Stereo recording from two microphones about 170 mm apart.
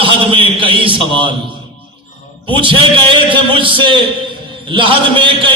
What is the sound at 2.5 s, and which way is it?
A man's voice, 30° right (ahead or behind).